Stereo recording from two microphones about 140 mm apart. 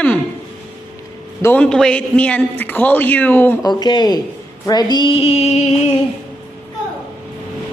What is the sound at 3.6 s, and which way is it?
Speech, 30° left (ahead or behind).